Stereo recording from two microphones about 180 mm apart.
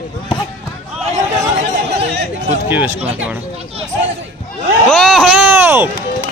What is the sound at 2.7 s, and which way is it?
Speech, 10° right (ahead or behind).